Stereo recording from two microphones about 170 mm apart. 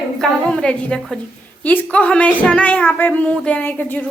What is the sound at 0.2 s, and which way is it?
A woman's voice, 5° left (ahead or behind).